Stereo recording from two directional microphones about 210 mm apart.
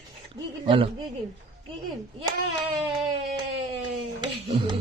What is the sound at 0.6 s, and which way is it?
Speech, 25° right (ahead or behind).